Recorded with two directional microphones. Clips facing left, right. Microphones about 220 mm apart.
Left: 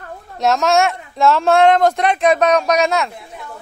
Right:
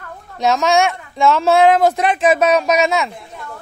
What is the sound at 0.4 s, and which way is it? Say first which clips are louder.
Speech: even; centre (ahead or behind).